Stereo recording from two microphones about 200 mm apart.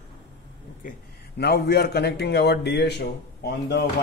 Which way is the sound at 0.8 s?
50° left (ahead or behind).